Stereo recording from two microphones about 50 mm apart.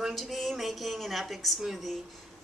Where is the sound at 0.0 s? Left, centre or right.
Centre.